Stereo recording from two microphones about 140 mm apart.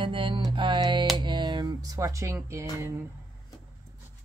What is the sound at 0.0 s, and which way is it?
Music, 35° right (ahead or behind).